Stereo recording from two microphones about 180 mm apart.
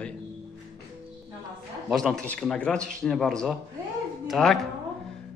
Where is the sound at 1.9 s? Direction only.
Centre (ahead or behind).